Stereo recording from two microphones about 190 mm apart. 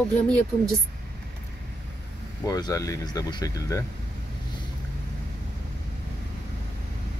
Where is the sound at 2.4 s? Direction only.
15° left (ahead or behind).